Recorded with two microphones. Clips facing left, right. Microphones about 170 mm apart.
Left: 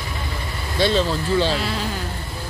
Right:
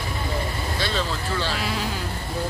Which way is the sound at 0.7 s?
25° left (ahead or behind).